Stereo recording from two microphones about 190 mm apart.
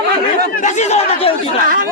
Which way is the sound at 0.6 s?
40° left (ahead or behind).